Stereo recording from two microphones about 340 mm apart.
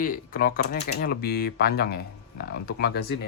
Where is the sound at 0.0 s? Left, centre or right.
Left.